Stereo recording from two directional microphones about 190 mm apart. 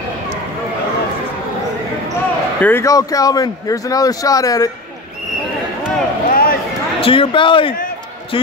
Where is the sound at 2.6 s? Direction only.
15° left (ahead or behind).